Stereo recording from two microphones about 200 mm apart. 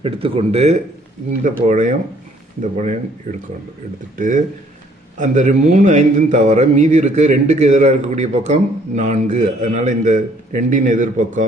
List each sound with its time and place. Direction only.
0.0 s speech: 30° right (ahead or behind); by 3.4 s 45° right (ahead or behind)
5.1 s speech: 40° right (ahead or behind)